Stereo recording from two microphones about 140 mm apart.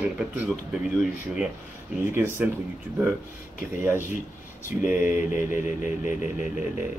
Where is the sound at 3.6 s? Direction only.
20° right (ahead or behind).